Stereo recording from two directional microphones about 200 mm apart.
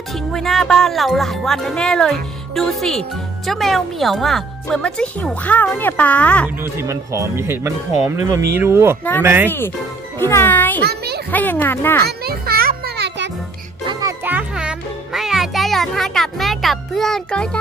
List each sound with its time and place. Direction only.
0.1 s speech: centre (ahead or behind)
6.6 s speech: 15° right (ahead or behind)
9.5 s a child's voice: 10° left (ahead or behind)
10.8 s a sound: 55° right (ahead or behind)
11.3 s speech: 10° left (ahead or behind)
12.0 s music: 50° right (ahead or behind)
13.8 s music: 15° right (ahead or behind); by 17.6 s 5° left (ahead or behind)